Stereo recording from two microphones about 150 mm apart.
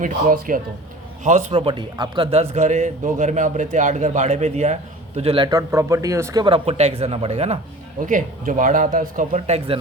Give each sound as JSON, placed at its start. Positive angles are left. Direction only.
{"t": 0.0, "sound": "speech", "side_deg": -65}
{"t": 1.2, "sound": "speech", "side_deg": -50}
{"t": 1.6, "sound": "speech", "side_deg": -35}
{"t": 5.5, "sound": "speech", "side_deg": -20}
{"t": 6.4, "sound": "speech", "side_deg": -40}
{"t": 8.0, "sound": "speech", "side_deg": -60}